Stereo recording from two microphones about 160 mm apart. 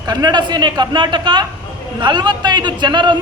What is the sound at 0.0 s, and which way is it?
Speech, 25° right (ahead or behind).